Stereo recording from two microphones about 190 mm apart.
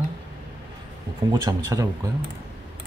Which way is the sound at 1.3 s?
20° right (ahead or behind).